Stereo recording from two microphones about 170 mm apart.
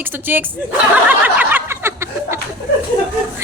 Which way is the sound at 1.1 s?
10° right (ahead or behind).